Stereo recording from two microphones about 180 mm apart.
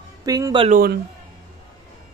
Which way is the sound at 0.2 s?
20° right (ahead or behind).